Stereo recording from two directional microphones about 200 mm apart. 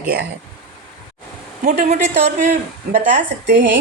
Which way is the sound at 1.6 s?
35° right (ahead or behind).